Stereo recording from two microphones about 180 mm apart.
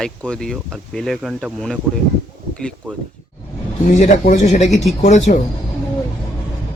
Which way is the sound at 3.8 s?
45° left (ahead or behind).